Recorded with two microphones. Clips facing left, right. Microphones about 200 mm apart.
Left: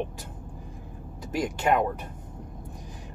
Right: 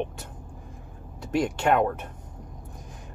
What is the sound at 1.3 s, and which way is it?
Speech, 5° left (ahead or behind).